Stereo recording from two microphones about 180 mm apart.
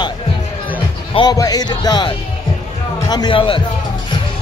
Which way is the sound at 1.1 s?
20° left (ahead or behind).